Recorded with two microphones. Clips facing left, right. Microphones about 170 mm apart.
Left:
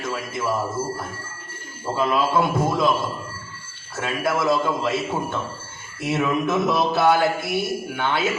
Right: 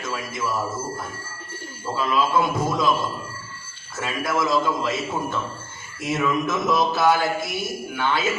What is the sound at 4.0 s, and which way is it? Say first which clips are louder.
Speech: left 1 dB; 60° left (ahead or behind).